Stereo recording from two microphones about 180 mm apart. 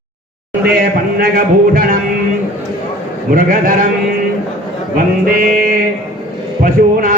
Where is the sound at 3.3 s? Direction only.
50° right (ahead or behind).